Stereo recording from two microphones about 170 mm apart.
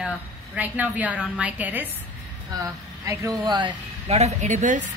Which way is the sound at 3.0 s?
20° right (ahead or behind).